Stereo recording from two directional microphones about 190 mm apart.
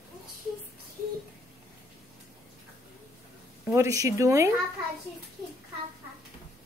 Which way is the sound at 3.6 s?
15° right (ahead or behind).